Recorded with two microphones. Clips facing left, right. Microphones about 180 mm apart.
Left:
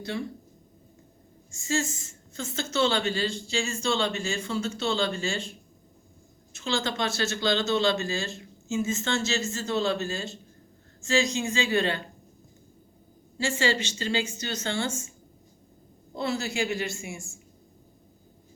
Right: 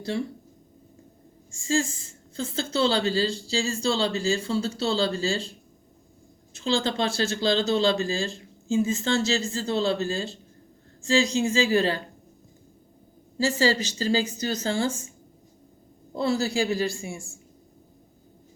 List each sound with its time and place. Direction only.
1.5 s speech: 30° right (ahead or behind)
6.5 s speech: 30° right (ahead or behind)
14.0 s speech: 35° right (ahead or behind)
16.1 s speech: 35° right (ahead or behind)